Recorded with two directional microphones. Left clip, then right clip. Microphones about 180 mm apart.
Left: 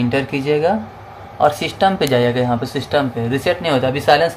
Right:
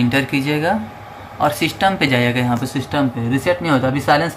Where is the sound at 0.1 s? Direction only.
30° left (ahead or behind).